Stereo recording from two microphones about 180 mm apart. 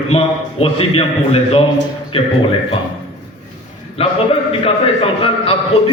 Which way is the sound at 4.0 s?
30° left (ahead or behind).